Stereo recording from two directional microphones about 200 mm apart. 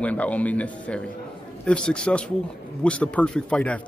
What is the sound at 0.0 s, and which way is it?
A man's voice, 5° left (ahead or behind).